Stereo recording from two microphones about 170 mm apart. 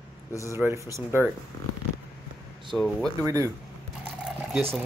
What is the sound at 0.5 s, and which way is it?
Speech, 15° right (ahead or behind).